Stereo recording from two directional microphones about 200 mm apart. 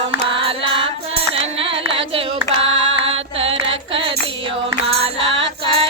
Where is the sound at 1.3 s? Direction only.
30° right (ahead or behind).